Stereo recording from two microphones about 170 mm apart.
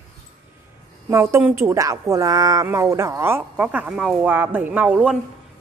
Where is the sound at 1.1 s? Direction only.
15° right (ahead or behind).